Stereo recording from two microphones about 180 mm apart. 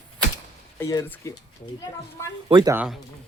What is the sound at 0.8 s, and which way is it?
Speech, 20° left (ahead or behind).